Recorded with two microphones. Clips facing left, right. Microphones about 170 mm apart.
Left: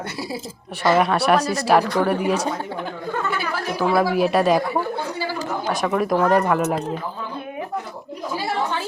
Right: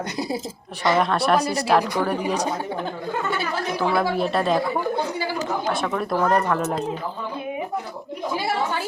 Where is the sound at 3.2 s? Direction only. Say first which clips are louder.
Right 1 dB; 25° right (ahead or behind).